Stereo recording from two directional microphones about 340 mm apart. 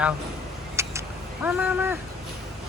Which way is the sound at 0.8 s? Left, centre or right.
Centre.